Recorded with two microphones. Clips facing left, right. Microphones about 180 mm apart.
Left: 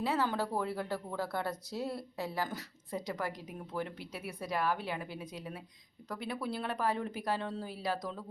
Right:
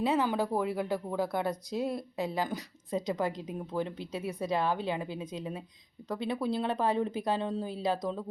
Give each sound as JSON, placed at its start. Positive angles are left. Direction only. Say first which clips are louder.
{"t": 0.0, "sound": "speech", "louder": "right 4 dB", "side_deg": -20}